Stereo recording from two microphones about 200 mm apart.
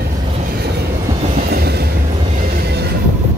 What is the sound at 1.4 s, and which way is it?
Train, 50° right (ahead or behind).